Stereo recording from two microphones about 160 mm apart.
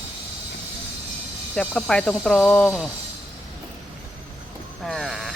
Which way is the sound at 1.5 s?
5° left (ahead or behind).